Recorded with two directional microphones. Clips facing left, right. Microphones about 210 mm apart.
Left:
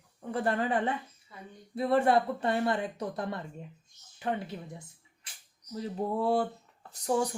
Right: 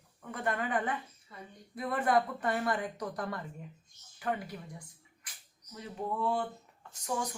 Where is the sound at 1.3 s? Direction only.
Centre (ahead or behind).